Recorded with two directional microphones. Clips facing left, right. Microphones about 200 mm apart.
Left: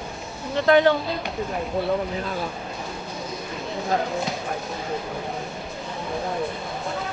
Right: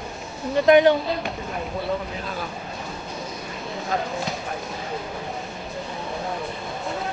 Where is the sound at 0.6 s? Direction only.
15° right (ahead or behind).